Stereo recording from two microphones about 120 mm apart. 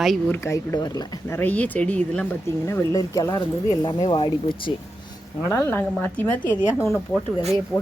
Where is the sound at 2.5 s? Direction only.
20° left (ahead or behind).